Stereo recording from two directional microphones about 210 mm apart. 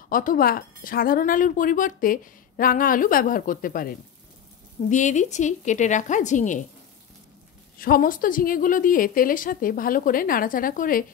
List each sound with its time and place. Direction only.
0.1 s a woman's voice: 40° left (ahead or behind)
7.8 s a woman's voice: 40° left (ahead or behind)